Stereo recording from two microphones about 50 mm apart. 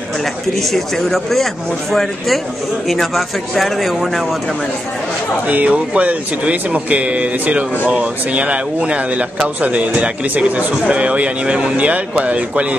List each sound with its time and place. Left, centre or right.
0.2 s speech: centre
5.5 s speech: right